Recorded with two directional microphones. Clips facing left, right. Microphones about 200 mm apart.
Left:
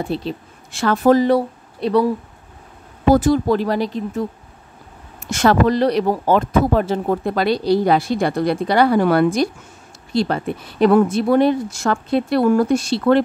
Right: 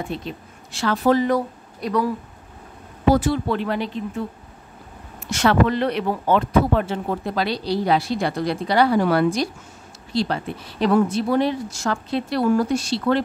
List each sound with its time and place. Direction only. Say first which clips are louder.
0.0 s speech: left 6 dB; 35° left (ahead or behind)
0.7 s speech: left 4 dB; 50° left (ahead or behind)
1.2 s speech: left 5 dB; 30° left (ahead or behind)
3.1 s speech: left 4 dB; 45° left (ahead or behind)